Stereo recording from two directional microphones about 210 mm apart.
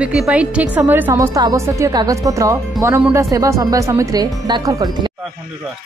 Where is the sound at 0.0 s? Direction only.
5° right (ahead or behind).